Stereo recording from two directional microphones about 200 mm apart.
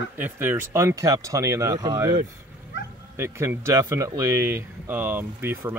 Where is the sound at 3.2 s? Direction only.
15° right (ahead or behind).